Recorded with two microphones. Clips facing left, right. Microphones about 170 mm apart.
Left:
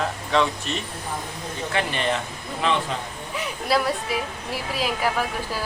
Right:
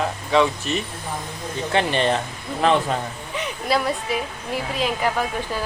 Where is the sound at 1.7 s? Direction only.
30° right (ahead or behind).